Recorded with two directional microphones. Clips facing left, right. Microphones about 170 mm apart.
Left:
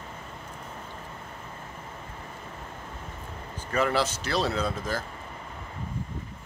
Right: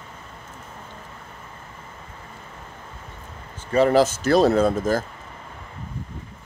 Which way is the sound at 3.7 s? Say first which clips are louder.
Right 9 dB; 35° right (ahead or behind).